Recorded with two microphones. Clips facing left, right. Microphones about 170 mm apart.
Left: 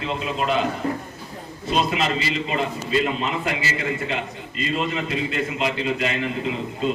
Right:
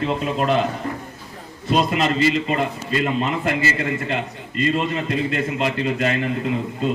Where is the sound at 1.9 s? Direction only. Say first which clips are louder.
Right 5 dB; 45° right (ahead or behind).